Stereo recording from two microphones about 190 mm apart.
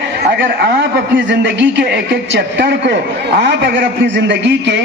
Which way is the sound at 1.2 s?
70° right (ahead or behind).